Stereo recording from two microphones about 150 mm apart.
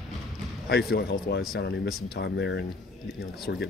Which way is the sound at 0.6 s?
90° left.